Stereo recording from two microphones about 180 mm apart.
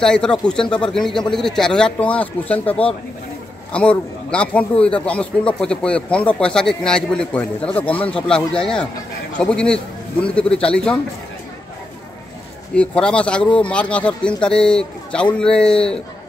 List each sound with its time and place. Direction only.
0.0 s a man's voice: 5° left (ahead or behind)
12.7 s a man's voice: 5° left (ahead or behind)